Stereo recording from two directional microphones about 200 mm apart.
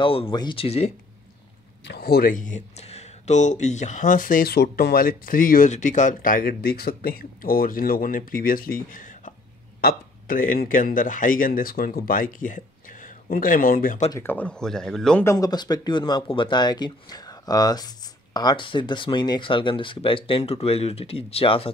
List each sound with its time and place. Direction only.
0.0 s speech: 25° left (ahead or behind)
1.9 s speech: 50° left (ahead or behind)
14.1 s speech: 10° left (ahead or behind)
15.3 s speech: 20° left (ahead or behind)